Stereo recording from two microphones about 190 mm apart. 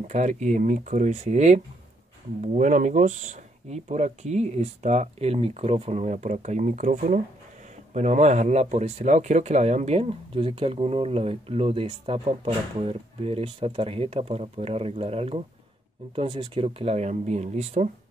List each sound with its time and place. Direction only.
0.0 s speech: 35° right (ahead or behind)